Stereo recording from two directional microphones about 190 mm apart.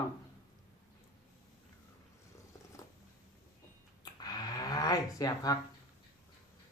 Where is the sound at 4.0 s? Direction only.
20° left (ahead or behind).